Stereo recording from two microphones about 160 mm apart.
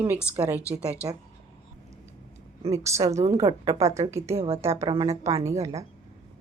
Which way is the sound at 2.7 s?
20° right (ahead or behind).